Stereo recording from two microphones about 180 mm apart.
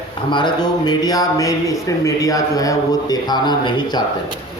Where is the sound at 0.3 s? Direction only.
25° left (ahead or behind).